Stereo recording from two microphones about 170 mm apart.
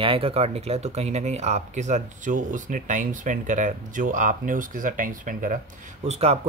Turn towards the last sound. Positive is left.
turn(degrees=-40)  # may be behind; listen again after turning